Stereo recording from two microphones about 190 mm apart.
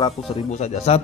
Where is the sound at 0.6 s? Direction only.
35° left (ahead or behind).